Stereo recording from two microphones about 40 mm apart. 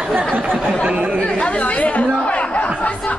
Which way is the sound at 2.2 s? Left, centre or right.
Left.